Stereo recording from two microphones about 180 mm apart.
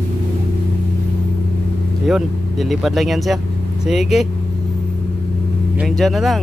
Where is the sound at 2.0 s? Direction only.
Centre (ahead or behind).